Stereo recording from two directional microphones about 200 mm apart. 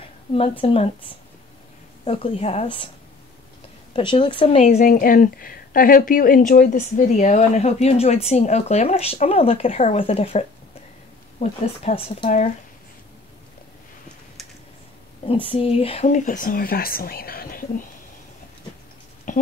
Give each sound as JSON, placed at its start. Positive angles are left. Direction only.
{"t": 0.3, "sound": "a woman's voice", "side_deg": 30}
{"t": 3.9, "sound": "speech", "side_deg": 25}
{"t": 15.2, "sound": "speech", "side_deg": 25}
{"t": 19.3, "sound": "a sound", "side_deg": 40}